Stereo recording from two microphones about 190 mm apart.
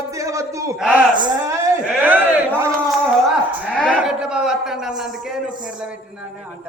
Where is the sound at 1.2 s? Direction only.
15° right (ahead or behind).